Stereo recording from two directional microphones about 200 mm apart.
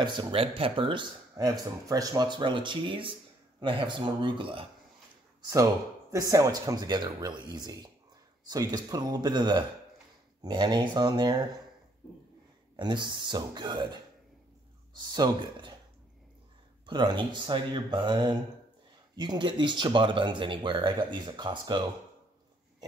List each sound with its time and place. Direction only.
0.0 s speech: 25° right (ahead or behind)
6.1 s speech: 15° right (ahead or behind)
12.7 s speech: 25° right (ahead or behind)
16.8 s speech: 20° right (ahead or behind)